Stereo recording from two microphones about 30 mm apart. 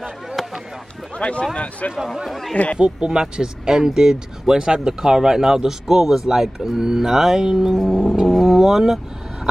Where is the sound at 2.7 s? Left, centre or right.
Right.